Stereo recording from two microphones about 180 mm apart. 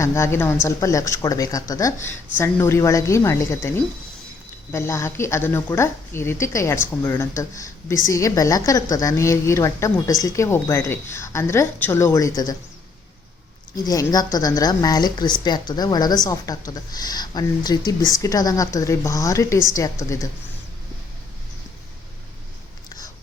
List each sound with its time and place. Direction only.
0.0 s a woman's voice: 15° left (ahead or behind)
13.8 s a woman's voice: 20° left (ahead or behind)